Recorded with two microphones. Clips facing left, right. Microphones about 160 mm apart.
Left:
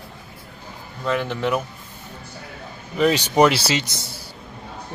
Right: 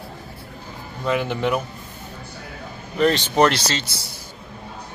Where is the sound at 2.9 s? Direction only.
10° left (ahead or behind).